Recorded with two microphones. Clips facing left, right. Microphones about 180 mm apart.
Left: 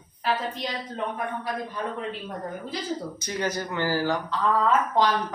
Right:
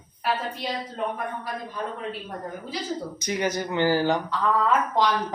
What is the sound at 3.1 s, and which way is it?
A man's voice, 15° right (ahead or behind).